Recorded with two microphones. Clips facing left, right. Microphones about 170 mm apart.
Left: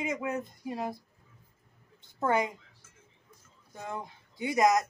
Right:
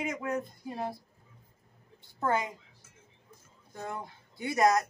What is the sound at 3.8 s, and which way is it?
Speech, 15° left (ahead or behind).